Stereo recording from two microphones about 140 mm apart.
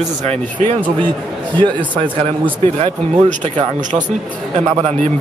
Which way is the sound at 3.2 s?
60° right (ahead or behind).